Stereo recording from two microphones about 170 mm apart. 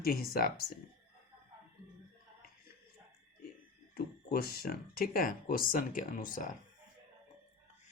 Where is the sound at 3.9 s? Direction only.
65° left (ahead or behind).